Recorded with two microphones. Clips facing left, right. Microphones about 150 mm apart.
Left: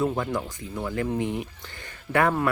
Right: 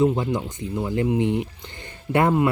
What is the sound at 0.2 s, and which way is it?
Speech, 20° right (ahead or behind).